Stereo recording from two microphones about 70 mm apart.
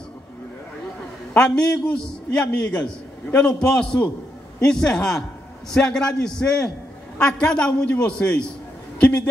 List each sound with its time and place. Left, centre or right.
1.4 s a man's voice: centre